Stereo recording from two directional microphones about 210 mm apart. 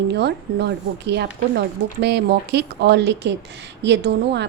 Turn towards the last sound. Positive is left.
turn(degrees=-55)  # may be behind; listen again after turning